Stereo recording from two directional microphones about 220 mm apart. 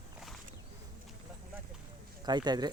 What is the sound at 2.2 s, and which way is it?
Speech, 20° right (ahead or behind).